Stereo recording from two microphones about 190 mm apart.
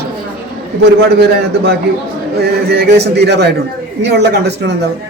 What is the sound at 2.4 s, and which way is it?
A man's voice, 60° right (ahead or behind).